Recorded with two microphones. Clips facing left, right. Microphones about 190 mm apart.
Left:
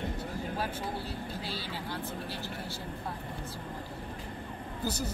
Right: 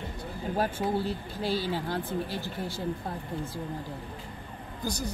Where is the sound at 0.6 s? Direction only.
45° right (ahead or behind).